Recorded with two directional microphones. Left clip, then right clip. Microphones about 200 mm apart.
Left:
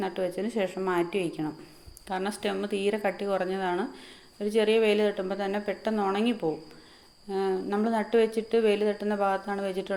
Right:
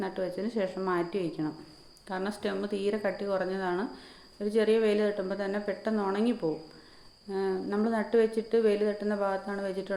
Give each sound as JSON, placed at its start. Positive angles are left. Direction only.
{"t": 0.0, "sound": "speech", "side_deg": 0}